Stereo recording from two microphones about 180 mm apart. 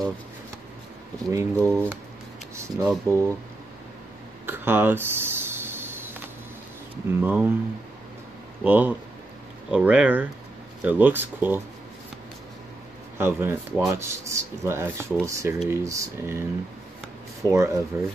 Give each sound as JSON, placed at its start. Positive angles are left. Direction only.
{"t": 1.3, "sound": "speech", "side_deg": -10}
{"t": 4.5, "sound": "a sound", "side_deg": -10}
{"t": 7.1, "sound": "speech", "side_deg": -10}
{"t": 8.6, "sound": "speech", "side_deg": -10}
{"t": 13.2, "sound": "speech", "side_deg": -10}
{"t": 17.5, "sound": "speech", "side_deg": -15}